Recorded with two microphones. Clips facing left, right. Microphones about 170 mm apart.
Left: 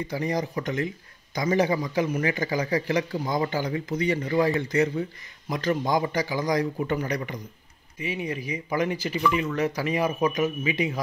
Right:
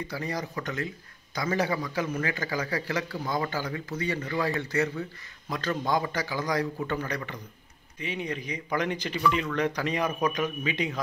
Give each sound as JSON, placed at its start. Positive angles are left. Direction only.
{"t": 0.1, "sound": "a man's voice", "side_deg": 20}